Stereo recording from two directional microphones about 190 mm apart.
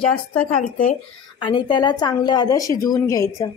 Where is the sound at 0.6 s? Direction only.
40° left (ahead or behind).